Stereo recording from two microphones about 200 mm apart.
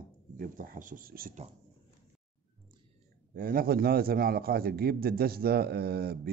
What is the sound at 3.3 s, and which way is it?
Speech, 45° right (ahead or behind).